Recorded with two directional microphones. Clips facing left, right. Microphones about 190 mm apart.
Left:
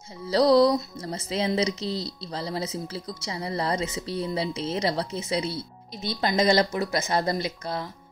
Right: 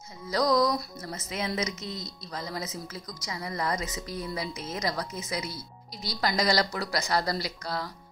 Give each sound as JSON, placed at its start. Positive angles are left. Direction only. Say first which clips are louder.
{"t": 0.3, "sound": "speech", "louder": "left 6 dB", "side_deg": 30}